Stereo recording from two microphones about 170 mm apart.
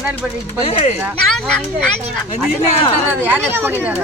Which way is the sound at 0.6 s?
35° left (ahead or behind).